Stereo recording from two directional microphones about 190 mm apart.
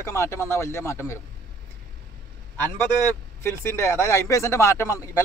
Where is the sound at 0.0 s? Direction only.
15° left (ahead or behind).